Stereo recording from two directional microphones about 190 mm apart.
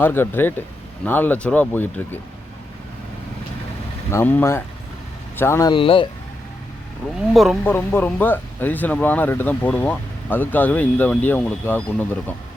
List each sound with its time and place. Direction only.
0.0 s speech: 10° left (ahead or behind)
4.1 s speech: 10° left (ahead or behind)
5.7 s speech: 25° left (ahead or behind)
7.3 s speech: centre (ahead or behind)
7.6 s speech: 10° left (ahead or behind)